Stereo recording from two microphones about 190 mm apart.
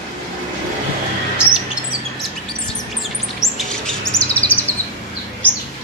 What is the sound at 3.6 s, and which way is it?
Chirp, 5° left (ahead or behind).